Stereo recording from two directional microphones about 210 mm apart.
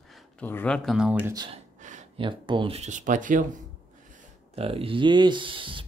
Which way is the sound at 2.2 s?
25° right (ahead or behind).